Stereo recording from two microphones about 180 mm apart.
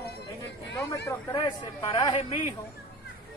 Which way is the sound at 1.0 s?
20° left (ahead or behind).